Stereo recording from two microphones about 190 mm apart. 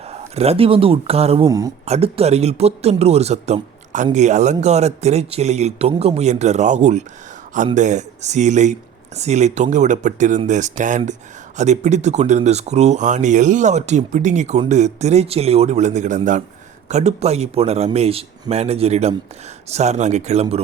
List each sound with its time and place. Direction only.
0.1 s speech: 30° right (ahead or behind)
1.5 s speech: 20° right (ahead or behind)
1.8 s speech: 35° right (ahead or behind)